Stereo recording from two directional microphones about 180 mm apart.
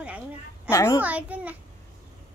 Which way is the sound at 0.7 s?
15° left (ahead or behind).